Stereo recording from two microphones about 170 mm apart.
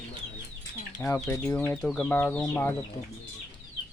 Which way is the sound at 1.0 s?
15° left (ahead or behind).